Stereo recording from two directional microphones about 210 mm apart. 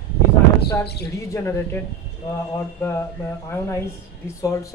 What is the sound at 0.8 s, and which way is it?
Speech, 50° left (ahead or behind).